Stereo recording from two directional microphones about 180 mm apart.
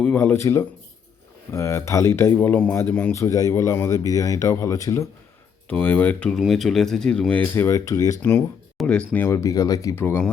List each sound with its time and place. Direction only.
0.0 s speech: 10° left (ahead or behind)
8.8 s speech: 5° left (ahead or behind)